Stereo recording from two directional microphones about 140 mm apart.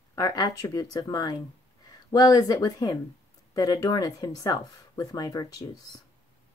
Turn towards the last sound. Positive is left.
turn(degrees=25)  # may be behind; listen again after turning